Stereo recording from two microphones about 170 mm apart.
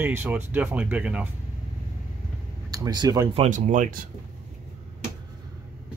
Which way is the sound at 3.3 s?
40° right (ahead or behind).